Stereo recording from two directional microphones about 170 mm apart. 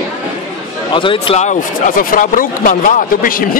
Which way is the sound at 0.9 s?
30° left (ahead or behind).